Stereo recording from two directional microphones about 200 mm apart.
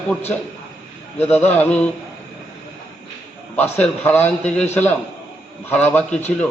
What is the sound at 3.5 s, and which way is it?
A man's voice, 10° left (ahead or behind).